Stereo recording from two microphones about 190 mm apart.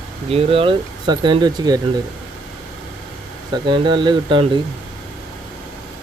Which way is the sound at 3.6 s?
25° right (ahead or behind).